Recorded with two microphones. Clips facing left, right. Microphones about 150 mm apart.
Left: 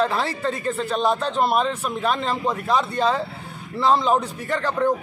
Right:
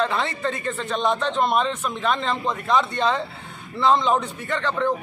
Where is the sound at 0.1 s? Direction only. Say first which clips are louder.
Left 1 dB; 35° left (ahead or behind).